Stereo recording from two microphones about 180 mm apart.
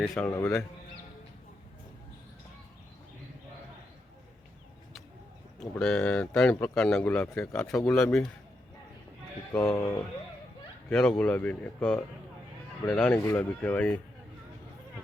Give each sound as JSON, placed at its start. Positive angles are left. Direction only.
{"t": 0.3, "sound": "speech", "side_deg": 15}
{"t": 5.5, "sound": "speech", "side_deg": 5}
{"t": 9.6, "sound": "speech", "side_deg": 5}